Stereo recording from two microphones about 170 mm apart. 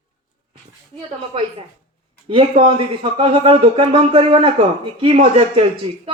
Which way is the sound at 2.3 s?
30° right (ahead or behind).